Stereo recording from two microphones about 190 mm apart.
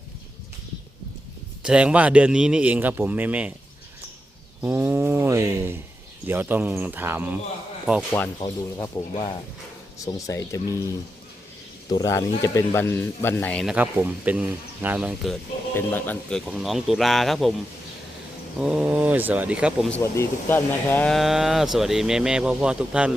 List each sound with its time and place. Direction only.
1.6 s speech: 5° right (ahead or behind)
4.6 s a sound: 10° right (ahead or behind)
6.2 s speech: 10° right (ahead or behind)
8.4 s speech: 15° left (ahead or behind)
10.0 s speech: 20° left (ahead or behind)
13.7 s speech: 10° right (ahead or behind)
15.7 s speech: 10° left (ahead or behind)
18.6 s speech: 5° right (ahead or behind)
19.9 s speech: 15° left (ahead or behind); by 23.1 s 5° right (ahead or behind)